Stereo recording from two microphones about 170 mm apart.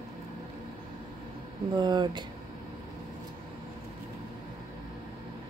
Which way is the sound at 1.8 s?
25° right (ahead or behind).